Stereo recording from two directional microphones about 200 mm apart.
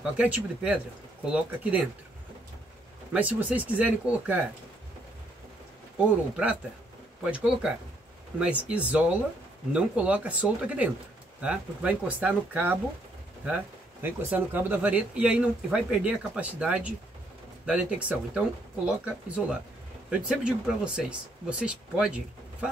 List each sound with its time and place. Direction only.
0.0 s speech: 5° right (ahead or behind)
3.1 s speech: 5° right (ahead or behind)
6.3 s speech: 5° right (ahead or behind)
14.0 s speech: 10° right (ahead or behind)